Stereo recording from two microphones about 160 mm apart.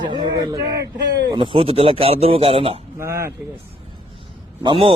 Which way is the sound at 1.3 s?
30° right (ahead or behind).